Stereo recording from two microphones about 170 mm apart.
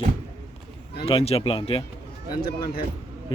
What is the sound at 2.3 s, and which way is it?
Speech, 60° left (ahead or behind).